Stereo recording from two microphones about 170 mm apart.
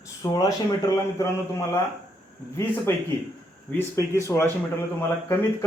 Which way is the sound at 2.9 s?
15° left (ahead or behind).